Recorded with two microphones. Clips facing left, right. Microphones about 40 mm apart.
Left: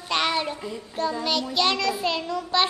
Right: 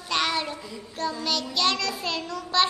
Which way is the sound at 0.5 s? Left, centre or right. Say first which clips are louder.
Left 4 dB; left.